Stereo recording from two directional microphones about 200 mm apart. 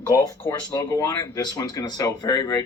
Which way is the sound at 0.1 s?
20° left (ahead or behind).